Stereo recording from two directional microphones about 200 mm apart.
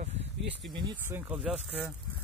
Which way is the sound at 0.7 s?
25° right (ahead or behind).